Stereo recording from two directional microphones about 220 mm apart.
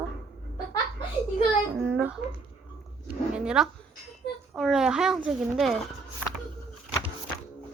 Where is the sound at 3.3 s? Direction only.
5° right (ahead or behind).